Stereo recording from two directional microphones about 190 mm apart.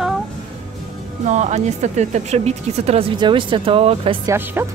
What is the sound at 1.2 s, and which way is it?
Speech, 35° right (ahead or behind).